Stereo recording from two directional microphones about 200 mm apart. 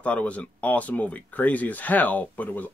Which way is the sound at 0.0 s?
5° left (ahead or behind).